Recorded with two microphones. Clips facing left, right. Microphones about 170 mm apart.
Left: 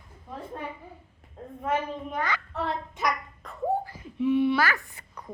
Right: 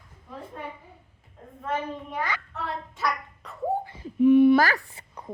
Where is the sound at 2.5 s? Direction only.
30° left (ahead or behind).